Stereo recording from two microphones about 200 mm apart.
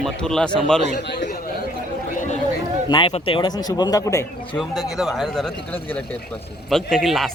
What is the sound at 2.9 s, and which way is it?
Speech, 25° left (ahead or behind).